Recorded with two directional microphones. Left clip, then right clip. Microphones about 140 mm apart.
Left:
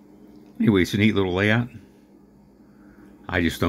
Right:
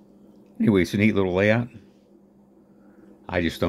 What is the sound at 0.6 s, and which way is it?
Speech, 30° right (ahead or behind).